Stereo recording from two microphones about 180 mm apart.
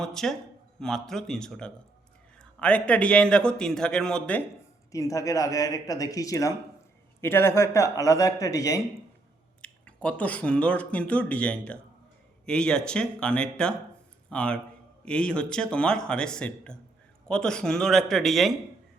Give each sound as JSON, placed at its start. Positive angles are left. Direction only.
{"t": 0.0, "sound": "a man's voice", "side_deg": 5}
{"t": 4.9, "sound": "a man's voice", "side_deg": 20}
{"t": 9.6, "sound": "a man's voice", "side_deg": 5}